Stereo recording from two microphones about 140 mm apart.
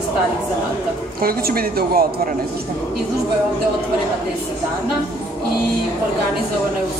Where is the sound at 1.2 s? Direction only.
90° right.